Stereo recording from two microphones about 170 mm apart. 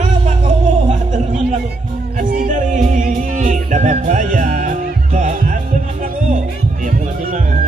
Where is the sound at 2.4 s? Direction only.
50° right (ahead or behind).